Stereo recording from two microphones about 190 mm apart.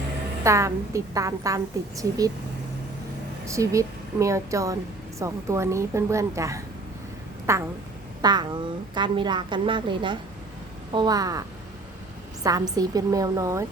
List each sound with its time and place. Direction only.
0.4 s a woman's voice: 15° right (ahead or behind)
3.4 s a woman's voice: 15° right (ahead or behind)